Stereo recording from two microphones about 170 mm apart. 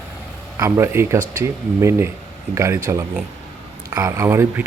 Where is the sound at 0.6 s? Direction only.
15° right (ahead or behind).